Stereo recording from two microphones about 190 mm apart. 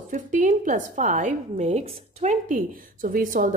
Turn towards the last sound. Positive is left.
turn(degrees=-45)  # may be behind; listen again after turning